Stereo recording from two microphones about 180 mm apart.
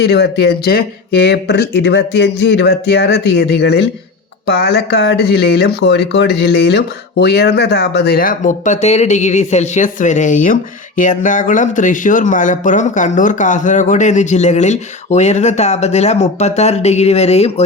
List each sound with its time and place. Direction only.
0.0 s speech: 70° left (ahead or behind); by 17.5 s 35° left (ahead or behind)